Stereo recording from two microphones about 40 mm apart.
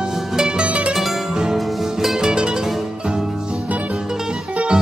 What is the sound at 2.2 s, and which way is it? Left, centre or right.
Music, right.